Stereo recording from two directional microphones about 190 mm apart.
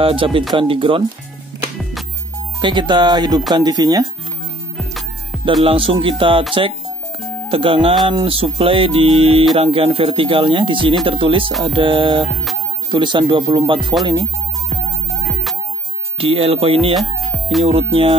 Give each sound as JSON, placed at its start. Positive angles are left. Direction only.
{"t": 0.0, "sound": "music", "side_deg": -30}
{"t": 2.6, "sound": "music", "side_deg": -25}
{"t": 4.7, "sound": "music", "side_deg": 0}
{"t": 5.6, "sound": "music", "side_deg": -30}
{"t": 7.4, "sound": "music", "side_deg": -30}
{"t": 16.2, "sound": "music", "side_deg": -30}
{"t": 16.9, "sound": "speech", "side_deg": 0}
{"t": 17.6, "sound": "music", "side_deg": -30}